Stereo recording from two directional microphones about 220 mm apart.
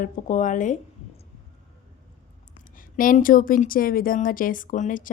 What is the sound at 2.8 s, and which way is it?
Speech, 40° left (ahead or behind).